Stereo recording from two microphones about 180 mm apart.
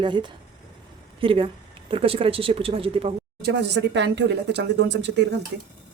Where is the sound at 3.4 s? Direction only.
70° right (ahead or behind).